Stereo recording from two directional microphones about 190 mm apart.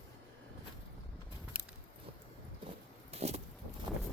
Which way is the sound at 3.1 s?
35° right (ahead or behind).